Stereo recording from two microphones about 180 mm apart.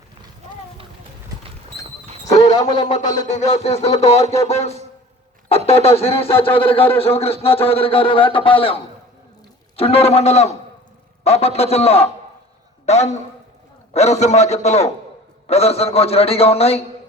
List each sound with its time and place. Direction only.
2.4 s a man's voice: 20° left (ahead or behind)
3.0 s a man's voice: 40° left (ahead or behind)
9.7 s a man's voice: 35° left (ahead or behind)